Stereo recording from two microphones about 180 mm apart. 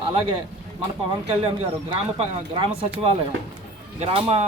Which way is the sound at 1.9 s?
30° right (ahead or behind).